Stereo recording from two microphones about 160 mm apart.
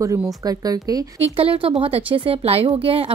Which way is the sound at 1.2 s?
35° right (ahead or behind).